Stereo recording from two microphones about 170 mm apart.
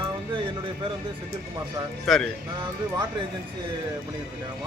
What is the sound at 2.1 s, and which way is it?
Speech, centre (ahead or behind).